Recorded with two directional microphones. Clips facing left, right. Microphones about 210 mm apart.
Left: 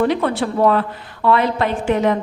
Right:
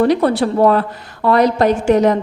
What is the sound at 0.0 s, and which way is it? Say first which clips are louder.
A woman's voice: right 4 dB; 40° right (ahead or behind).